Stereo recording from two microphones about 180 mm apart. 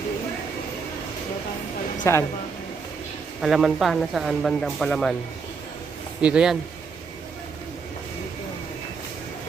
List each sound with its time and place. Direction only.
2.0 s speech: 15° left (ahead or behind)
3.4 s speech: centre (ahead or behind)
6.2 s speech: 5° right (ahead or behind)